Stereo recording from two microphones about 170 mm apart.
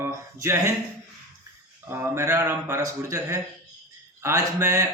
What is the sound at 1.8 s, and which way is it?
A man's voice, 15° right (ahead or behind).